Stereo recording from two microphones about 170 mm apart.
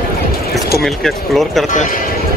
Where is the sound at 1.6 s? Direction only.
45° left (ahead or behind).